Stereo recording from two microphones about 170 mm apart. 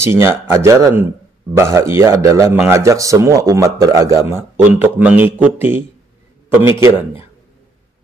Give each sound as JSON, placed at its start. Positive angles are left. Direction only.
{"t": 0.0, "sound": "a man's voice", "side_deg": -15}